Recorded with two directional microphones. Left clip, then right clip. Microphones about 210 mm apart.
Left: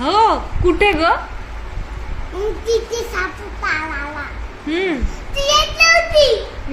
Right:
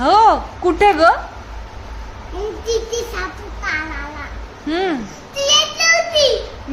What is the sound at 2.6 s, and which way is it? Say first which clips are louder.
Speech: left 1 dB; 5° right (ahead or behind).